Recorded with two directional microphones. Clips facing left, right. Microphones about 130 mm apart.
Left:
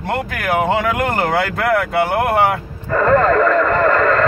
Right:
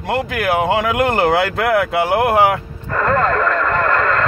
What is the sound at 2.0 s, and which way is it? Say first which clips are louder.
Speech: right 1 dB; 5° right (ahead or behind).